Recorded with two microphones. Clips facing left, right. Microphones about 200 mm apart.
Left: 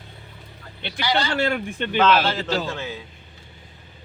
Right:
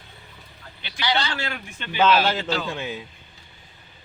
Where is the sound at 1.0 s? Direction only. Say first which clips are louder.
Left 1 dB; 10° left (ahead or behind).